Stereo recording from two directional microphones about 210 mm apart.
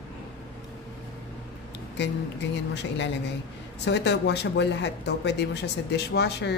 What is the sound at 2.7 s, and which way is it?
A woman's voice, 55° left (ahead or behind).